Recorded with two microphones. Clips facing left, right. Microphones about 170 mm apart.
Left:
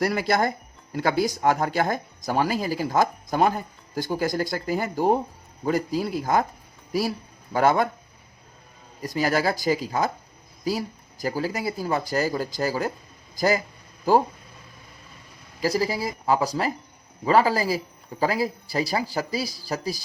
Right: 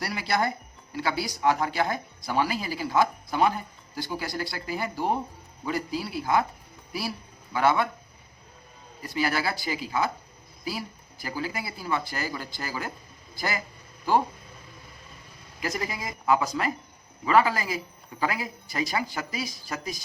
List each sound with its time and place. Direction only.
0.0 s speech: 50° left (ahead or behind)
7.5 s speech: 45° left (ahead or behind)
9.0 s speech: 40° left (ahead or behind)
15.6 s speech: 35° left (ahead or behind)